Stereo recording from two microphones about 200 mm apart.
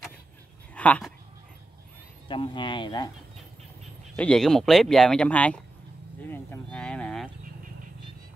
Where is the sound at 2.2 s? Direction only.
25° left (ahead or behind).